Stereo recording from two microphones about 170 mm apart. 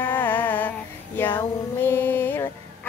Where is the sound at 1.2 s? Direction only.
10° left (ahead or behind).